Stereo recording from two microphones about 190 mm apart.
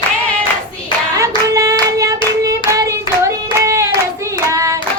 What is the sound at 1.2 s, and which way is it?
Hands, 15° right (ahead or behind).